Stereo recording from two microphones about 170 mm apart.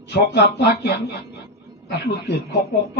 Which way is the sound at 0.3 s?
70° left (ahead or behind).